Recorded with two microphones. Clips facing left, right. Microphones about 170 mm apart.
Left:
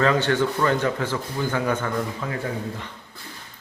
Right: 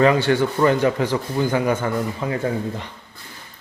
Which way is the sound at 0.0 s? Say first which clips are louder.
Right 4 dB; 10° right (ahead or behind).